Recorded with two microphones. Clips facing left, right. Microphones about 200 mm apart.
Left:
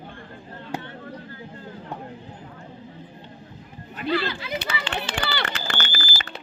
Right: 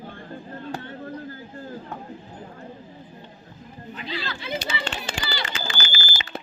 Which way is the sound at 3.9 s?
60° left (ahead or behind).